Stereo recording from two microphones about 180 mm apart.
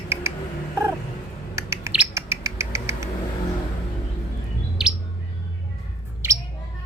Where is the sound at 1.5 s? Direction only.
15° right (ahead or behind).